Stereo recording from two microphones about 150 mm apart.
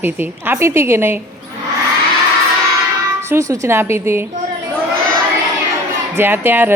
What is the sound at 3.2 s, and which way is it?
A woman's voice, 20° right (ahead or behind).